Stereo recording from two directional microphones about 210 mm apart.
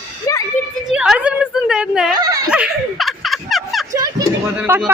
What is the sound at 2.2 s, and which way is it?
Speech, 15° right (ahead or behind).